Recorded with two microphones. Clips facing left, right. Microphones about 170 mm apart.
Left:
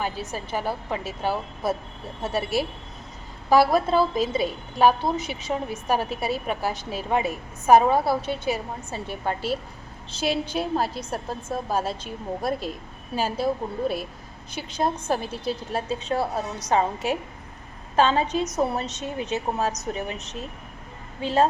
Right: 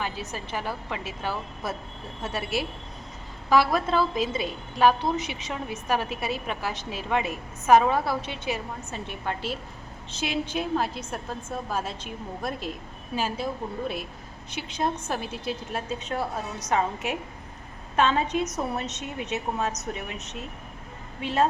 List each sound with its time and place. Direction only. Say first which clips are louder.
0.5 s a woman's voice: left 5 dB; 35° left (ahead or behind)